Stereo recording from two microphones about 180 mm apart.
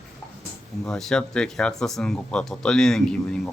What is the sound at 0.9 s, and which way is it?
Speech, 5° left (ahead or behind).